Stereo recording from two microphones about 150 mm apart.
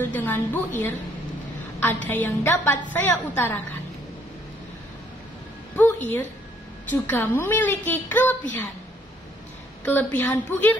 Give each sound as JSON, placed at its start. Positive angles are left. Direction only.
{"t": 0.0, "sound": "a woman's voice", "side_deg": 10}
{"t": 1.8, "sound": "a woman's voice", "side_deg": 15}
{"t": 5.8, "sound": "a woman's voice", "side_deg": 15}
{"t": 10.1, "sound": "a woman's voice", "side_deg": 15}